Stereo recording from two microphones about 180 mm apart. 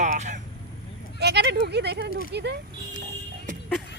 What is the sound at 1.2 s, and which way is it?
Speech, 70° right (ahead or behind).